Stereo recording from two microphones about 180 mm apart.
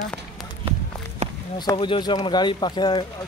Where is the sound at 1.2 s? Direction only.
40° right (ahead or behind).